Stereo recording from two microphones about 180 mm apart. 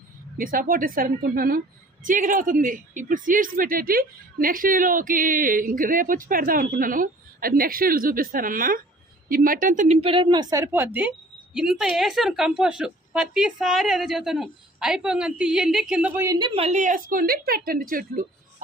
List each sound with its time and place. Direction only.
0.3 s a man's voice: 50° right (ahead or behind); by 16.5 s 15° right (ahead or behind)
16.6 s a man's voice: 40° right (ahead or behind)